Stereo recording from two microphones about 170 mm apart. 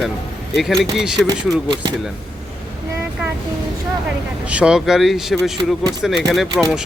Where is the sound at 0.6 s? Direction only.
Centre (ahead or behind).